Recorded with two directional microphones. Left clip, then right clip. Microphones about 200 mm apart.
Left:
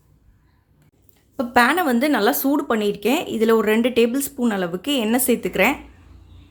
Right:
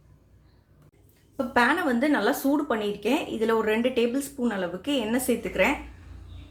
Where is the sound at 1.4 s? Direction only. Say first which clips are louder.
Left 6 dB; 55° left (ahead or behind).